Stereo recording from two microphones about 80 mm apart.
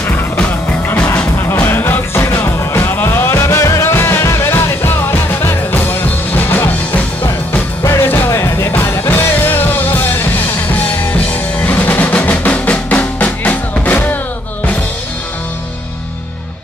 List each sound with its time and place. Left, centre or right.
0.0 s music: centre
1.4 s music: left
6.6 s music: left
11.6 s music: left